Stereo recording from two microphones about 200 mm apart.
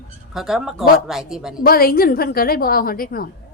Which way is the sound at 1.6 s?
50° left (ahead or behind).